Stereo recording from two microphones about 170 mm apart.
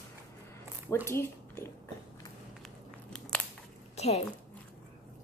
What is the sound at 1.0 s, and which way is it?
Speech, 15° left (ahead or behind).